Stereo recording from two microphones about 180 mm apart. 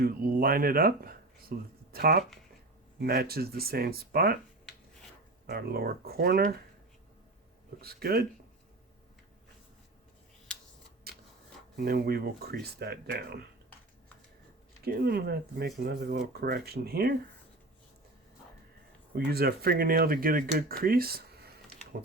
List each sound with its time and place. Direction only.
0.0 s speech: 55° right (ahead or behind)
5.5 s speech: 60° right (ahead or behind)
7.8 s speech: 60° right (ahead or behind)
11.1 s a sound: 60° right (ahead or behind)
11.8 s speech: 60° right (ahead or behind)
14.8 s speech: 60° right (ahead or behind)
19.3 s speech: 60° right (ahead or behind)